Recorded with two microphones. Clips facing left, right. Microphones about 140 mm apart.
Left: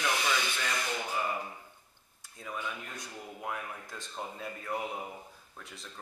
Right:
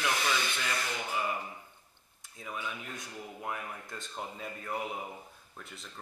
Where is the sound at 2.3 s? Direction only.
Centre (ahead or behind).